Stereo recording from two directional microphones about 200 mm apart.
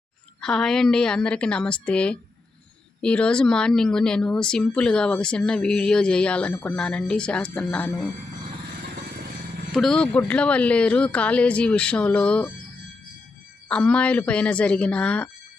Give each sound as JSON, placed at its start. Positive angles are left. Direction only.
{"t": 0.4, "sound": "speech", "side_deg": 5}
{"t": 9.7, "sound": "speech", "side_deg": 0}
{"t": 13.7, "sound": "speech", "side_deg": 5}